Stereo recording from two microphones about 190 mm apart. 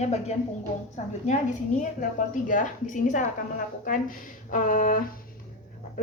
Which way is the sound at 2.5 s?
40° left (ahead or behind).